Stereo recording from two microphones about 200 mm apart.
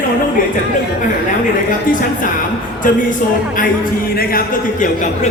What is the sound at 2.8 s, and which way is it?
Speech, 40° left (ahead or behind).